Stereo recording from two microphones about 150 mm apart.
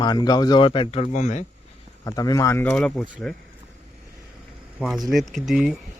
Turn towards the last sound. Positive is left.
turn(degrees=-5)  # may be behind; listen again after turning